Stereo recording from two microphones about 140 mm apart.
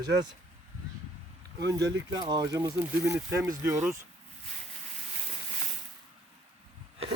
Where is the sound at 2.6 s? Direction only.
15° right (ahead or behind).